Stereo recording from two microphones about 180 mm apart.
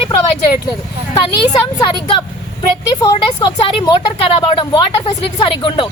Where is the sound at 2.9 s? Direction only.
25° left (ahead or behind).